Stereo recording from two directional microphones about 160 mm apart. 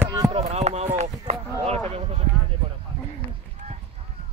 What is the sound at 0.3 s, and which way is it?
Chop, 45° right (ahead or behind).